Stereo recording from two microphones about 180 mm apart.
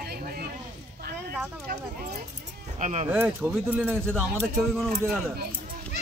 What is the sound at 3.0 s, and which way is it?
Speech, 10° right (ahead or behind).